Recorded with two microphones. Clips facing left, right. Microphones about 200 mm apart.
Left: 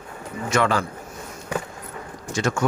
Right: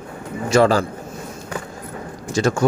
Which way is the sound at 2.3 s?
35° right (ahead or behind).